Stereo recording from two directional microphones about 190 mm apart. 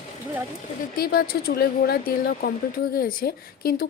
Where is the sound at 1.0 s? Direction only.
55° left (ahead or behind).